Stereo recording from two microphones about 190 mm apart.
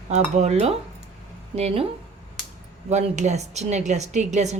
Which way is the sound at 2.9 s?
35° right (ahead or behind).